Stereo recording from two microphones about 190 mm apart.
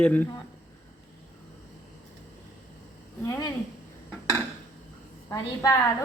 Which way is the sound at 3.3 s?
20° left (ahead or behind).